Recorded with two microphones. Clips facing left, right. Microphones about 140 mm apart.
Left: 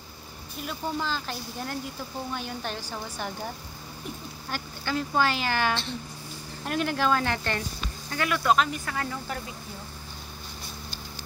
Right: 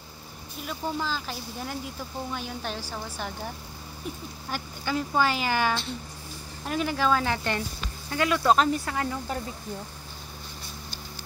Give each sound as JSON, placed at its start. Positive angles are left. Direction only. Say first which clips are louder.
{"t": 0.6, "sound": "speech", "louder": "even", "side_deg": 0}
{"t": 4.5, "sound": "speech", "louder": "right 1 dB", "side_deg": -5}
{"t": 8.1, "sound": "speech", "louder": "right 2 dB", "side_deg": -25}
{"t": 8.9, "sound": "speech", "louder": "right 3 dB", "side_deg": -20}